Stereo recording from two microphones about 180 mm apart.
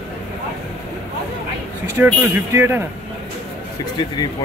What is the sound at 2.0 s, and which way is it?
Speech, 10° right (ahead or behind).